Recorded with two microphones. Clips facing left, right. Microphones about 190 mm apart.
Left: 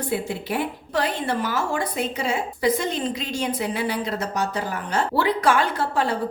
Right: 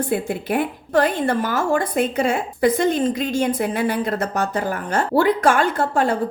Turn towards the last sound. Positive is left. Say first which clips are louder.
# right 4 dB
turn(degrees=-50)  # may be behind; listen again after turning